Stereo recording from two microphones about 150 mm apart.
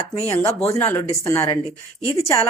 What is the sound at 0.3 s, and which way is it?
Speech, 20° left (ahead or behind).